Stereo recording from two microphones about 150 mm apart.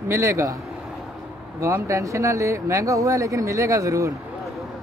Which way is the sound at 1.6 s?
20° right (ahead or behind).